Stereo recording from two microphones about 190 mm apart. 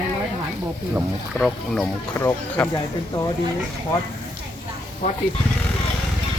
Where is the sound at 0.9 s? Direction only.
Centre (ahead or behind).